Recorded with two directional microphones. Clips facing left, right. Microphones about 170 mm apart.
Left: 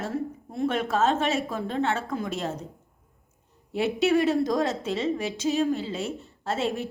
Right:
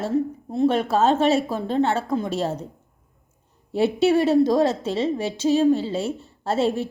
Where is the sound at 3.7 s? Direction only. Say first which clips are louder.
Right 4 dB; 30° right (ahead or behind).